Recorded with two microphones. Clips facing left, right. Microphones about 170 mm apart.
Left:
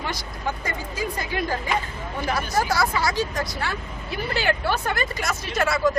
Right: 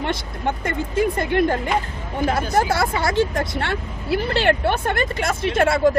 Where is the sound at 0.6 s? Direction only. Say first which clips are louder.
Right 8 dB; 55° right (ahead or behind).